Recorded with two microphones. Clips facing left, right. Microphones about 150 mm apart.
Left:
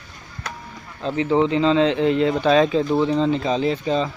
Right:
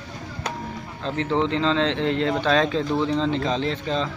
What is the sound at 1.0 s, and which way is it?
Speech, 5° left (ahead or behind).